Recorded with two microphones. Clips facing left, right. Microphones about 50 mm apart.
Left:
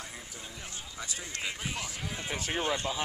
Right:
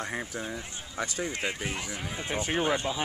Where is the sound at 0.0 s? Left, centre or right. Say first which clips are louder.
Right 10 dB; right.